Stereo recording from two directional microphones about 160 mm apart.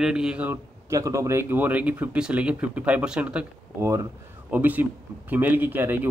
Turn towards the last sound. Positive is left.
turn(degrees=-10)  # may be behind; listen again after turning